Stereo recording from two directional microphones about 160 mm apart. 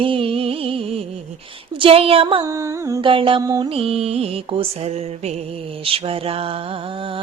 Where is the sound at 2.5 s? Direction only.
20° right (ahead or behind).